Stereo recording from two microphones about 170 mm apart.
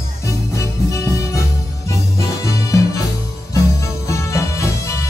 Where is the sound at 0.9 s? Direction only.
20° left (ahead or behind).